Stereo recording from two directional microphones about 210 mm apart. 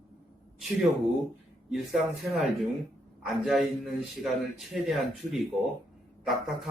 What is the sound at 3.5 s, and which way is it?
Speech, centre (ahead or behind).